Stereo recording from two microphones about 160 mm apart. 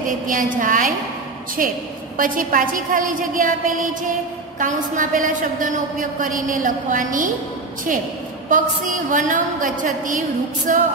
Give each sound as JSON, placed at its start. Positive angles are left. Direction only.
{"t": 0.0, "sound": "a woman's voice", "side_deg": -55}
{"t": 8.5, "sound": "a woman's voice", "side_deg": -55}